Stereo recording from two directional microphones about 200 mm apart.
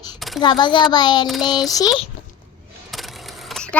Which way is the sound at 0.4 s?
20° left (ahead or behind).